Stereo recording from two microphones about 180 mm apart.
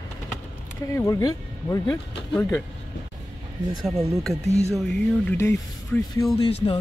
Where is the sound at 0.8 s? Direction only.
15° left (ahead or behind).